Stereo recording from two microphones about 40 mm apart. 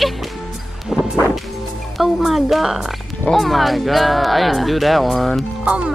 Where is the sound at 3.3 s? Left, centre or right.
Centre.